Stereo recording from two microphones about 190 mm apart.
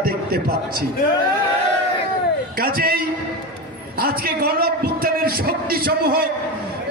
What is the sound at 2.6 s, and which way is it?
A man's voice, 50° right (ahead or behind).